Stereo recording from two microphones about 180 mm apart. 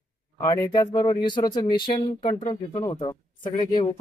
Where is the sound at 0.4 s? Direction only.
20° left (ahead or behind).